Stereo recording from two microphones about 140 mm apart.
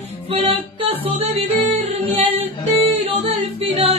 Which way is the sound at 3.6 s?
45° right (ahead or behind).